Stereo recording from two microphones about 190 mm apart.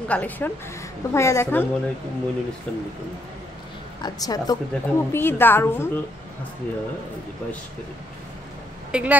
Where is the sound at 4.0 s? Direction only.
20° left (ahead or behind).